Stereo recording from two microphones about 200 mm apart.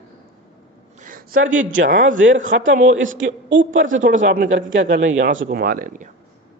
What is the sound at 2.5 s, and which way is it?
Speech, 55° right (ahead or behind).